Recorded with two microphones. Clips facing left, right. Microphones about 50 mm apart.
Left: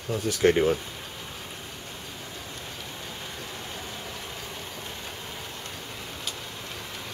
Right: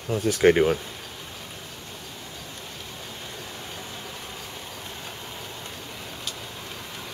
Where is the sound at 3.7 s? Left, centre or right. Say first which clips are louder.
Even; centre.